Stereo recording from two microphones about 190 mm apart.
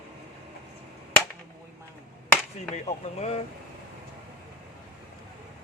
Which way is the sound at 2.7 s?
35° left (ahead or behind).